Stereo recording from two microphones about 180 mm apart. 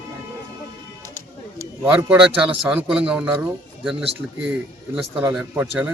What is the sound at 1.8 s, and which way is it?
Speech, 10° right (ahead or behind).